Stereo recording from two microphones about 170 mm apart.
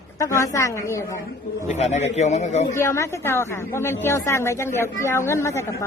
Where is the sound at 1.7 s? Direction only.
40° left (ahead or behind).